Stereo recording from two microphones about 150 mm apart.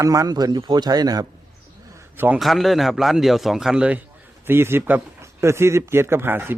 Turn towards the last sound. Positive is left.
turn(degrees=-15)  # may be behind; listen again after turning